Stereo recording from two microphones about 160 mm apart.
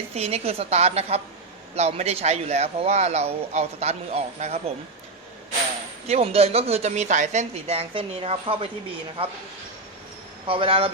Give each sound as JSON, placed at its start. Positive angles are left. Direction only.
{"t": 0.1, "sound": "a man's voice", "side_deg": -40}
{"t": 6.1, "sound": "a man's voice", "side_deg": -40}
{"t": 10.4, "sound": "a man's voice", "side_deg": -35}